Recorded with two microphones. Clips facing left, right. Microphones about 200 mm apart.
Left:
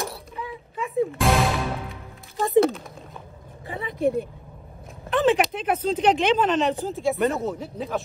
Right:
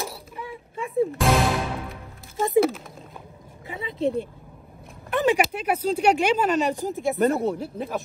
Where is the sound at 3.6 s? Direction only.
25° right (ahead or behind).